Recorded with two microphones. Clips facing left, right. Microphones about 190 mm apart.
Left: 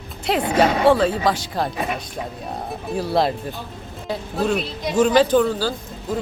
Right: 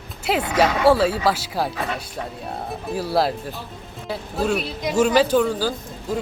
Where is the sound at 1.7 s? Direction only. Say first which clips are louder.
Left 2 dB; 15° left (ahead or behind).